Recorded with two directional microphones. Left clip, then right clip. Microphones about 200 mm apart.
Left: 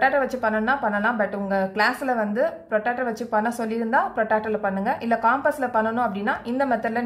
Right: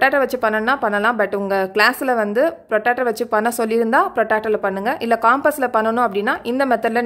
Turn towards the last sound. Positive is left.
turn(degrees=-55)  # may be behind; listen again after turning